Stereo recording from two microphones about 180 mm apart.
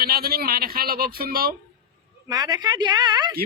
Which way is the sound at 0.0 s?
60° right (ahead or behind).